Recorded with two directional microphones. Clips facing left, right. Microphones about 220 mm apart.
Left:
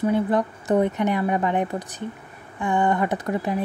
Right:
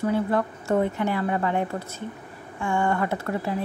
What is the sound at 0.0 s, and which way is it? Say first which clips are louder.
Speech: left 2 dB; 20° left (ahead or behind).